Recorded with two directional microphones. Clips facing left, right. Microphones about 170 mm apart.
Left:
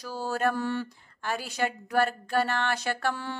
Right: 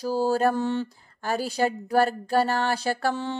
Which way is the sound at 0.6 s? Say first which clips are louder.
Right 4 dB; 20° right (ahead or behind).